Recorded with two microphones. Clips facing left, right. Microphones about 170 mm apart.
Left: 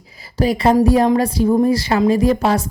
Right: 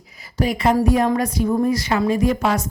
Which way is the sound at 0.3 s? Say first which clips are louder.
Left 4 dB; 35° left (ahead or behind).